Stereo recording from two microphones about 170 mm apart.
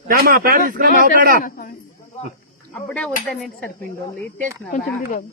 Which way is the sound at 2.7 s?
5° left (ahead or behind).